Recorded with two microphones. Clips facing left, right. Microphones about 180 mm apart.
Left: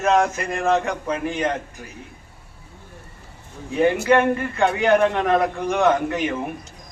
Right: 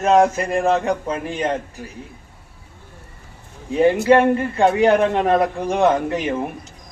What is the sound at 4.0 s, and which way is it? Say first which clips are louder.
A man's voice: right 3 dB; 30° right (ahead or behind).